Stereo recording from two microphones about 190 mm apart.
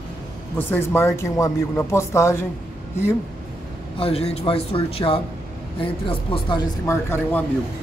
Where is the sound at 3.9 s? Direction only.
30° left (ahead or behind).